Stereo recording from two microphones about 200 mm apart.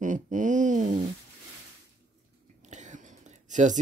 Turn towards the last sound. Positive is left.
turn(degrees=-35)  # may be behind; listen again after turning